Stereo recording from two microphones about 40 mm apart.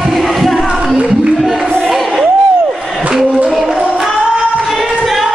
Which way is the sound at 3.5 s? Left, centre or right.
Centre.